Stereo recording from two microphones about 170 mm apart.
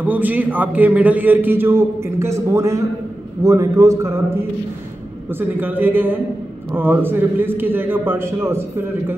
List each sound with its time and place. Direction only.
0.0 s a man's voice: 10° right (ahead or behind)